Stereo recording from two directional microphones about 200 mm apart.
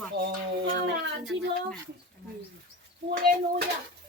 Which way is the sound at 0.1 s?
55° right (ahead or behind).